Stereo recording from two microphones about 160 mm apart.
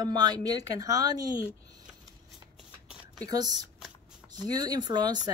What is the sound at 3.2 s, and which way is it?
Speech, 25° right (ahead or behind).